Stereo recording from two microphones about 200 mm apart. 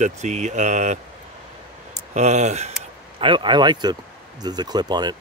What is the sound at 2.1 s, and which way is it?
Speech, 35° right (ahead or behind).